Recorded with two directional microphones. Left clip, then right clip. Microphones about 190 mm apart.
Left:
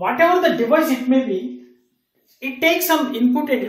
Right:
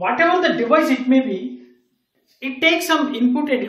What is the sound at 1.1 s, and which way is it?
Speech, centre (ahead or behind).